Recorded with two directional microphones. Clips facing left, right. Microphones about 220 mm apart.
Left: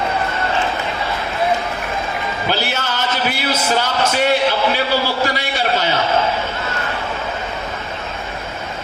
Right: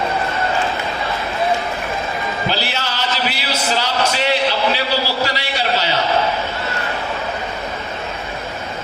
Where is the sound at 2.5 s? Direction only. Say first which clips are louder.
Left 2 dB; 50° left (ahead or behind).